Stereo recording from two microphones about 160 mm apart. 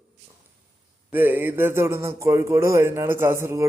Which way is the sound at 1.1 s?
10° right (ahead or behind).